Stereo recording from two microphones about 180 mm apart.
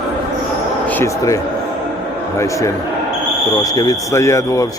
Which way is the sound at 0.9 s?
15° left (ahead or behind).